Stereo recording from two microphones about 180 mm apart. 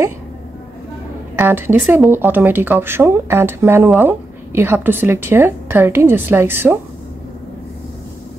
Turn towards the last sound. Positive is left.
turn(degrees=-10)  # may be behind; listen again after turning